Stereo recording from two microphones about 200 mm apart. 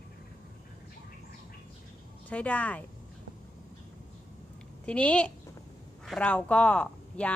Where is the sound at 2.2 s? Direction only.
5° left (ahead or behind).